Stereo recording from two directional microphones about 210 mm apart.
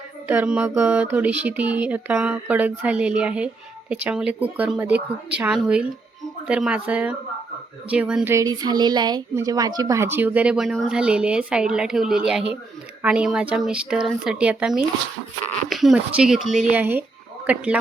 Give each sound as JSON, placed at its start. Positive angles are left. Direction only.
{"t": 0.3, "sound": "speech", "side_deg": -5}